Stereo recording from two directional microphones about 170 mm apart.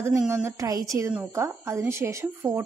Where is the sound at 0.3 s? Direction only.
15° right (ahead or behind).